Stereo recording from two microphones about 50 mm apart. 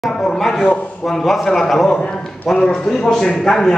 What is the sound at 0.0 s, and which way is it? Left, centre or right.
A man's voice, centre.